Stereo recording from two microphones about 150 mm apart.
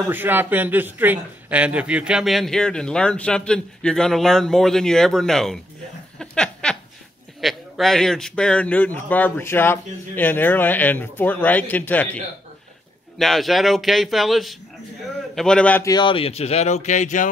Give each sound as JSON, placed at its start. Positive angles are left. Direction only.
{"t": 0.1, "sound": "a man's voice", "side_deg": -15}
{"t": 6.1, "sound": "a sound", "side_deg": 5}
{"t": 7.4, "sound": "a man's voice", "side_deg": 0}
{"t": 13.2, "sound": "a man's voice", "side_deg": 0}
{"t": 15.8, "sound": "speech", "side_deg": 30}